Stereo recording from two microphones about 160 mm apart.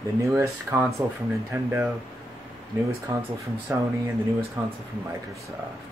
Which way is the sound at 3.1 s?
25° right (ahead or behind).